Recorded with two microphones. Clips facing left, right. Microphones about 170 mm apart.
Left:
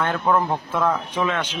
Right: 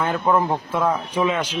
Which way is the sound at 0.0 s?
10° right (ahead or behind).